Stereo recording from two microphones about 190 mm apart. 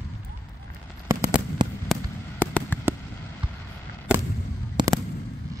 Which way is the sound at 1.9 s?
10° left (ahead or behind).